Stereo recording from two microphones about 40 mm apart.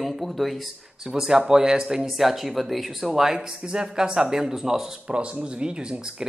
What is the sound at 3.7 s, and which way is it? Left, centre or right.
Speech, right.